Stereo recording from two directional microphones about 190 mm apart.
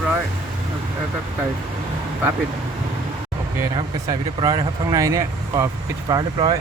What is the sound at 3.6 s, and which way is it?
Speech, 20° right (ahead or behind).